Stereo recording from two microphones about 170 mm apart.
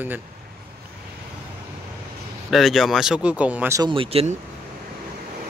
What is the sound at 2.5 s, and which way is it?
Speech, centre (ahead or behind).